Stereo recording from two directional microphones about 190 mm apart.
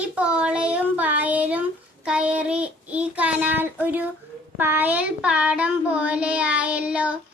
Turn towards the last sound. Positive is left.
turn(degrees=-5)  # may be behind; listen again after turning